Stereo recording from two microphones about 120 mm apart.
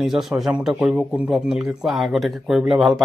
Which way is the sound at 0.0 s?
5° right (ahead or behind).